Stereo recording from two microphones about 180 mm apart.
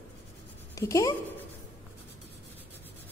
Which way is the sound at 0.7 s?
20° left (ahead or behind).